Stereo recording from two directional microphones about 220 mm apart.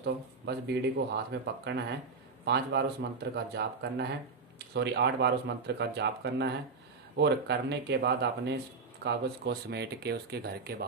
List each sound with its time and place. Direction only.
0.0 s speech: 50° right (ahead or behind)